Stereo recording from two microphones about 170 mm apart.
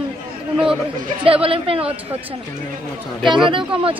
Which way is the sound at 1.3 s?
35° right (ahead or behind).